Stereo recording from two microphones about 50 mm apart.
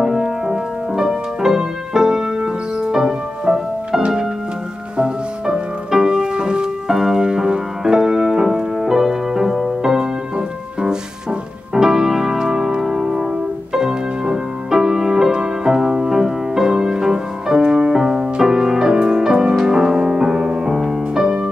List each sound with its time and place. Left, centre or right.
0.0 s music: centre